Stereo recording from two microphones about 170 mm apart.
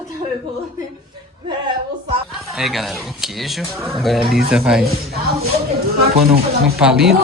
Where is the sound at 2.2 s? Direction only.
Centre (ahead or behind).